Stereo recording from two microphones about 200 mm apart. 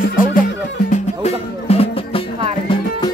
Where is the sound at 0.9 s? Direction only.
30° left (ahead or behind).